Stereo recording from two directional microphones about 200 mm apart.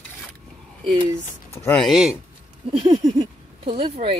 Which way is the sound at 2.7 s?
30° right (ahead or behind).